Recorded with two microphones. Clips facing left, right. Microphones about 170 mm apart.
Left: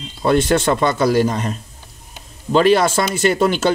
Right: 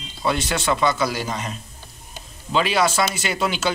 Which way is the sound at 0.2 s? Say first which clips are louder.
Left 8 dB; 50° left (ahead or behind).